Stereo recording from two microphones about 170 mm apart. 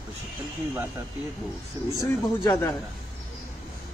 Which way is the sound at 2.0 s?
20° left (ahead or behind).